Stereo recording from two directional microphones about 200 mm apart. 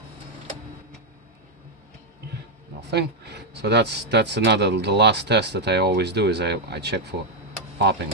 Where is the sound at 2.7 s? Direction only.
55° right (ahead or behind).